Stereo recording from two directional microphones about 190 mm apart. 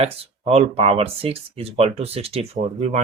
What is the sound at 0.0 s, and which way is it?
Speech, 30° right (ahead or behind).